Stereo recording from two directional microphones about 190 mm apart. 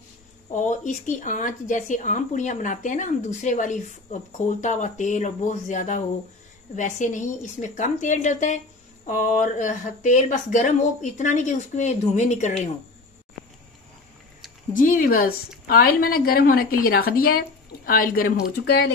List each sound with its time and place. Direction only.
0.5 s speech: 40° left (ahead or behind)
14.7 s a woman's voice: 45° left (ahead or behind)